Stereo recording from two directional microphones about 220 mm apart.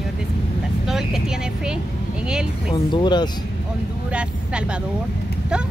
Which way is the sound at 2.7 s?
20° left (ahead or behind).